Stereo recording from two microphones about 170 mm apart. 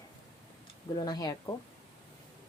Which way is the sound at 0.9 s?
25° left (ahead or behind).